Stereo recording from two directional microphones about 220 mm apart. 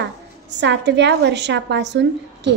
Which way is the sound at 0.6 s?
55° right (ahead or behind).